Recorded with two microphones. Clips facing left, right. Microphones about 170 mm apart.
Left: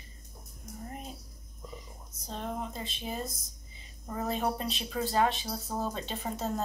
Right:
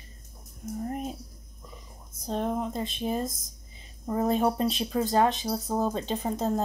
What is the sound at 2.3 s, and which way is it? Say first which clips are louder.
Speech: right 8 dB; 50° right (ahead or behind).